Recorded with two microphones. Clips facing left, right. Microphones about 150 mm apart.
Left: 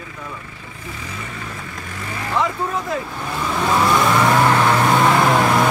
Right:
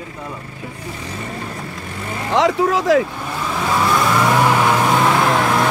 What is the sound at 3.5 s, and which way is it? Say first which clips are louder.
Vehicle: left 1 dB; centre (ahead or behind).